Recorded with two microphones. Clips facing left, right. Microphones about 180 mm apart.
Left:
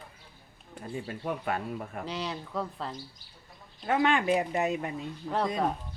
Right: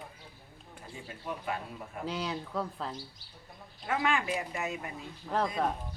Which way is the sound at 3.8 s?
35° left (ahead or behind).